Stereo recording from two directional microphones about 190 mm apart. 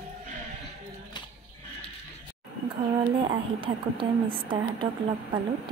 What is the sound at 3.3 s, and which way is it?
A woman's voice, 25° right (ahead or behind).